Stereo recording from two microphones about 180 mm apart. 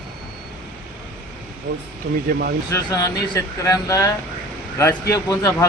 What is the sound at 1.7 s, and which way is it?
Speech, 70° right (ahead or behind).